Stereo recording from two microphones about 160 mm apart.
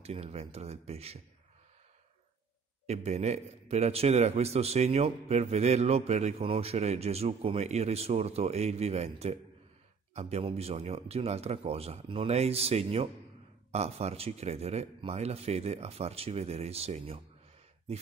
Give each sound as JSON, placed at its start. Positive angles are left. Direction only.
{"t": 0.0, "sound": "a man's voice", "side_deg": -40}
{"t": 2.9, "sound": "a man's voice", "side_deg": -40}